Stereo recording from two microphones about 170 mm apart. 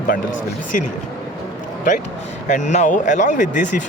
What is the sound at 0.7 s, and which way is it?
Speech, 50° left (ahead or behind).